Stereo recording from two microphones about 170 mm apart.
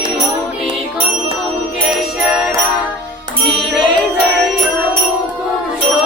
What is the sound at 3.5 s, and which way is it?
Music, centre (ahead or behind).